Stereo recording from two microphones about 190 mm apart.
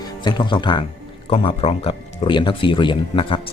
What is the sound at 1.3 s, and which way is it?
Speech, 30° left (ahead or behind).